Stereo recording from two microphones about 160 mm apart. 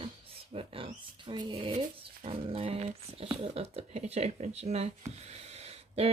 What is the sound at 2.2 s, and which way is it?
Speech, 35° right (ahead or behind).